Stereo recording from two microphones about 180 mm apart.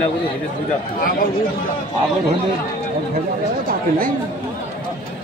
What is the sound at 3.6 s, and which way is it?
Speech, 50° right (ahead or behind).